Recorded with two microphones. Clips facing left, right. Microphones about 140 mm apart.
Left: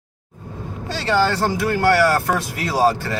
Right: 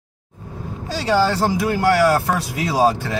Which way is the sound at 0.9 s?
10° right (ahead or behind).